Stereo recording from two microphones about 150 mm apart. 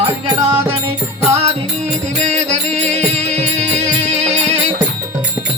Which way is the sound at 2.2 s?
50° right (ahead or behind).